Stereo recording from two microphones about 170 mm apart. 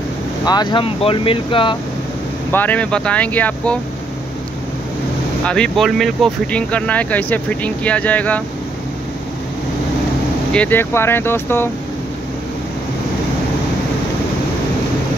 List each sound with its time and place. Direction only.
0.5 s speech: 25° left (ahead or behind)
2.5 s speech: 10° left (ahead or behind)
5.4 s speech: 5° left (ahead or behind)
10.5 s speech: 10° left (ahead or behind)